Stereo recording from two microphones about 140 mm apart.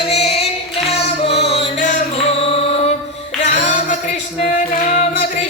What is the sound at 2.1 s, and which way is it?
Music, 45° left (ahead or behind).